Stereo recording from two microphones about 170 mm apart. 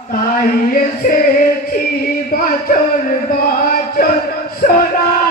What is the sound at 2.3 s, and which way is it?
Music, 60° left (ahead or behind).